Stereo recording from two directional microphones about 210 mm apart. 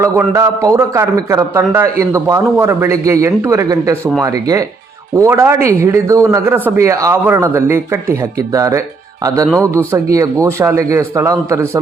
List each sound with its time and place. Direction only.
0.0 s speech: 15° right (ahead or behind)